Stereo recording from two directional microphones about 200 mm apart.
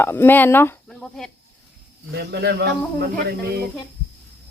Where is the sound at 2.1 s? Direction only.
55° right (ahead or behind).